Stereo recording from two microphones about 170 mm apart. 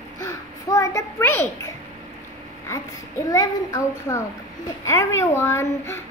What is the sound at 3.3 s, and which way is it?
Child singing, 20° left (ahead or behind).